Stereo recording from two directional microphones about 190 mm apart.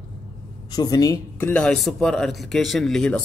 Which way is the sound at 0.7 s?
20° left (ahead or behind).